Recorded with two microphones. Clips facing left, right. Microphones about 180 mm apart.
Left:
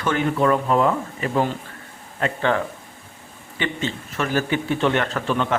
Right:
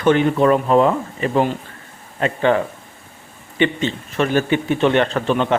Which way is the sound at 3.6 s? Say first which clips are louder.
Right 7 dB; 20° right (ahead or behind).